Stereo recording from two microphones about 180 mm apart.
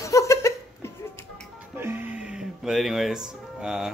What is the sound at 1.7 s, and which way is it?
Music, 10° right (ahead or behind).